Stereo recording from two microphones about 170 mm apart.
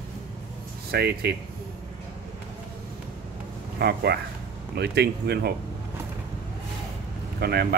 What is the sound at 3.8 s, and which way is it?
Speech, 70° right (ahead or behind).